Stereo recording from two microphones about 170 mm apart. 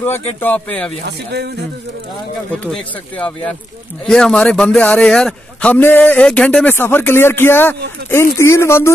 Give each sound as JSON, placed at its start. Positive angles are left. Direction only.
{"t": 0.0, "sound": "a man's voice", "side_deg": 10}
{"t": 2.5, "sound": "a man's voice", "side_deg": 5}